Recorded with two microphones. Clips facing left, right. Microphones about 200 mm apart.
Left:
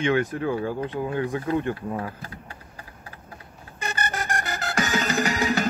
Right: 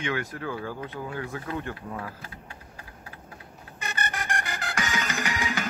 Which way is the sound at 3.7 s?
35° left (ahead or behind).